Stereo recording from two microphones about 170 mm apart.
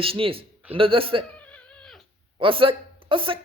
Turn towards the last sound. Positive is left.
turn(degrees=-30)  # may be behind; listen again after turning